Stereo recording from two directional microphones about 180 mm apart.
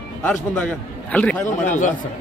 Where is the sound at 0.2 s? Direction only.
5° left (ahead or behind).